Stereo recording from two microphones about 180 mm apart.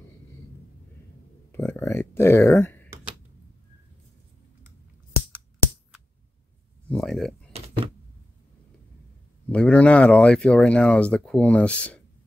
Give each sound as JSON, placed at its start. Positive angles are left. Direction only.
{"t": 1.5, "sound": "speech", "side_deg": 10}
{"t": 6.9, "sound": "a sound", "side_deg": 0}
{"t": 9.5, "sound": "speech", "side_deg": 5}